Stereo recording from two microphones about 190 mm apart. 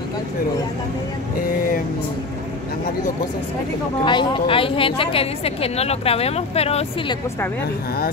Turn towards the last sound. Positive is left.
turn(degrees=30)  # may be behind; listen again after turning